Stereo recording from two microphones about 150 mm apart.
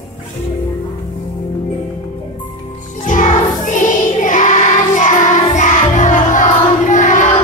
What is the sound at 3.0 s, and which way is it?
Music, 55° left (ahead or behind).